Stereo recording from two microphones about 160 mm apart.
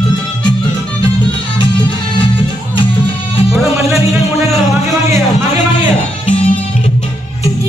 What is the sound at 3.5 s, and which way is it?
Music, centre (ahead or behind).